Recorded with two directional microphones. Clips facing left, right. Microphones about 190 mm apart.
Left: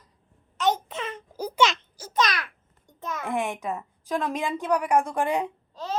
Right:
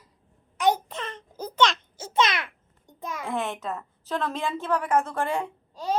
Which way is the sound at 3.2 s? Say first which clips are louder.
Left 2 dB; 15° left (ahead or behind).